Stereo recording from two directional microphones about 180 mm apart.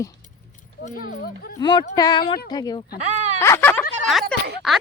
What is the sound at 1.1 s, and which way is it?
Speech, 55° left (ahead or behind).